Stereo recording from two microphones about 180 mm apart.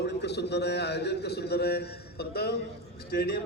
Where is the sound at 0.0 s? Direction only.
70° left (ahead or behind).